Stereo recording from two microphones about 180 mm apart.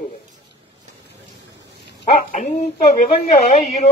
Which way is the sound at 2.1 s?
40° left (ahead or behind).